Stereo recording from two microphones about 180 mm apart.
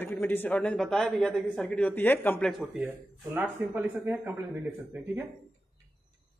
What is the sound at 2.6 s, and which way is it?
Speech, centre (ahead or behind).